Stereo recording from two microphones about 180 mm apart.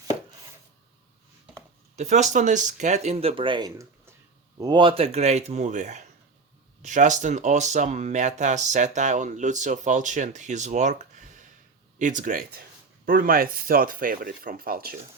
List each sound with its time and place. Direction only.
2.0 s speech: 40° right (ahead or behind); by 14.9 s 55° right (ahead or behind)